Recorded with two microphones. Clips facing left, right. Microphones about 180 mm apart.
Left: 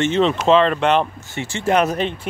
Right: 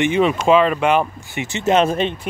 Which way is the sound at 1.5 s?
20° right (ahead or behind).